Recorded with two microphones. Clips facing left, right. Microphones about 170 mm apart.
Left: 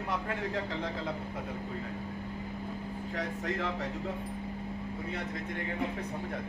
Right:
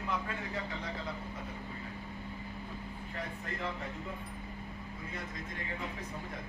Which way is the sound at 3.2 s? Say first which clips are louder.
Left 6 dB; 90° left.